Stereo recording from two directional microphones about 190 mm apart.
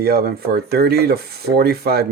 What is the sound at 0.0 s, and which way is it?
Speech, 55° right (ahead or behind).